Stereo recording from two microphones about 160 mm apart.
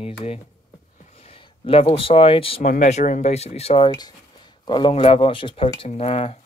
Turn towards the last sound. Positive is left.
turn(degrees=40)  # may be behind; listen again after turning